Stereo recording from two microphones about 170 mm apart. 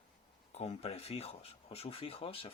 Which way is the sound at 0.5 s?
35° left (ahead or behind).